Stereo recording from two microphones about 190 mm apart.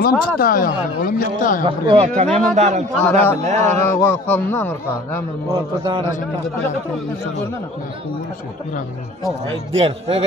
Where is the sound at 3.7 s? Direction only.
15° left (ahead or behind).